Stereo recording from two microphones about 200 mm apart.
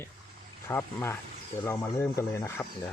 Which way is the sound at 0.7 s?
10° left (ahead or behind).